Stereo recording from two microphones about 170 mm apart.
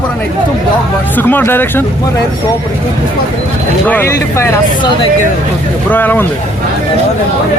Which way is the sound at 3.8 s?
10° left (ahead or behind).